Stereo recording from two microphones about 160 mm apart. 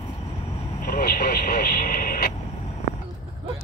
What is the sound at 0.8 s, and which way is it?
Speech, 65° left (ahead or behind).